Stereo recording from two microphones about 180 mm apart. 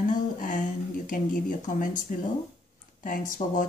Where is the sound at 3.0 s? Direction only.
50° left (ahead or behind).